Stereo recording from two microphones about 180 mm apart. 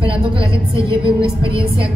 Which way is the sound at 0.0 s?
30° right (ahead or behind).